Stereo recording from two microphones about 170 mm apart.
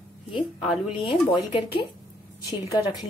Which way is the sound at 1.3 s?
30° left (ahead or behind).